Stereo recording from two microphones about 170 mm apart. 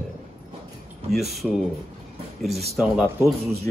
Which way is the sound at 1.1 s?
Centre (ahead or behind).